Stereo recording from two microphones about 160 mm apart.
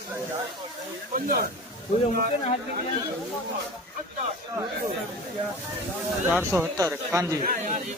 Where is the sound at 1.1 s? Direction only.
55° right (ahead or behind).